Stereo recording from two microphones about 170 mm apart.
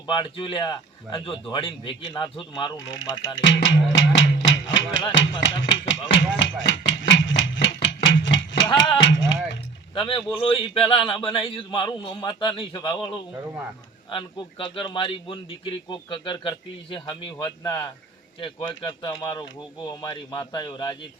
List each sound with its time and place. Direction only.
0.1 s a man's voice: 30° left (ahead or behind)
3.4 s speech: 90° left
3.9 s music: 90° left
5.4 s speech: 90° left
5.9 s a sound: 90° left
8.6 s speech: 30° left (ahead or behind)
9.0 s speech: 90° left
9.9 s a man's voice: 30° left (ahead or behind)